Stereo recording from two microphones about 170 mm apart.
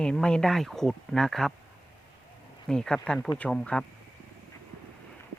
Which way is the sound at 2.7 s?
5° left (ahead or behind).